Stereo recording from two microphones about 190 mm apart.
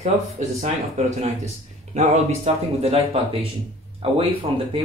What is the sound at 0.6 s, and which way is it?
Speech, 40° right (ahead or behind).